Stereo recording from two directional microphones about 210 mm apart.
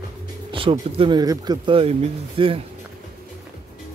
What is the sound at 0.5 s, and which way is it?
Speech, 25° right (ahead or behind).